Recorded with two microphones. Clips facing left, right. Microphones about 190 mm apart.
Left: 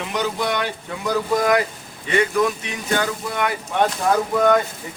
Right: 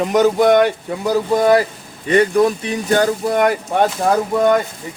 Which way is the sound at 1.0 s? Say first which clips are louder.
Right 5 dB; 30° right (ahead or behind).